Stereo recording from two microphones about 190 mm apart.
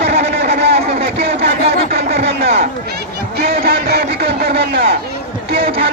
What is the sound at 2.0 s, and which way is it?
Speech, 35° right (ahead or behind).